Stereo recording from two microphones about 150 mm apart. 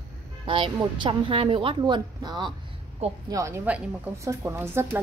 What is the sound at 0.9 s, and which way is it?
A woman's voice, 35° right (ahead or behind).